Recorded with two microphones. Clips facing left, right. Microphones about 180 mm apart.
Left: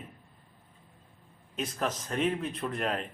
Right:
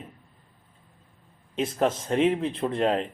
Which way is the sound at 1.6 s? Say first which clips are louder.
Right 8 dB; 30° right (ahead or behind).